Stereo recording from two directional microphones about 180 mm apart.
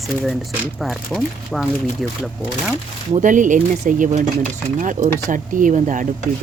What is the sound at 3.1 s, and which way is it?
Speech, 45° right (ahead or behind).